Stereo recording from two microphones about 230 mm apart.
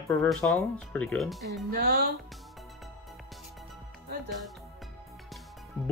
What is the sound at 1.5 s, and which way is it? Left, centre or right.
Speech, right.